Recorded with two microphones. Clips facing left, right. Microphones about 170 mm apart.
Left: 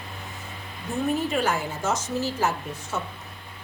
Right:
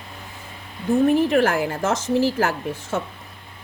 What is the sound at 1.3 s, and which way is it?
A woman's voice, 65° right (ahead or behind).